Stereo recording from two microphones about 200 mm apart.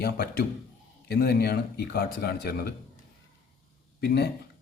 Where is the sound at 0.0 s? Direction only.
50° left (ahead or behind).